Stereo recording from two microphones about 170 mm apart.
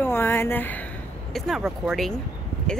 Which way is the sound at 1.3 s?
Centre (ahead or behind).